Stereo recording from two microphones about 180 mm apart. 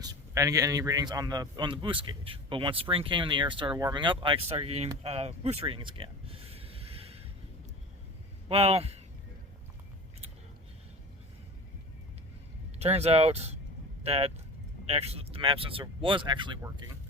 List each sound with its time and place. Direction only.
0.0 s a man's voice: 20° right (ahead or behind)
5.0 s a sound: 35° right (ahead or behind)
8.4 s speech: 35° right (ahead or behind)
12.8 s a man's voice: 35° right (ahead or behind)